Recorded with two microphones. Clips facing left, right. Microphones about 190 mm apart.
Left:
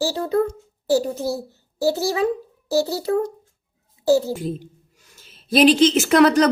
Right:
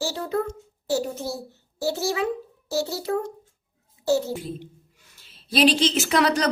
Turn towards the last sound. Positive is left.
turn(degrees=50)  # may be behind; listen again after turning